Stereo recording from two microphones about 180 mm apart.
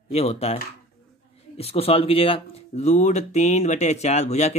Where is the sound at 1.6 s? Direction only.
35° left (ahead or behind).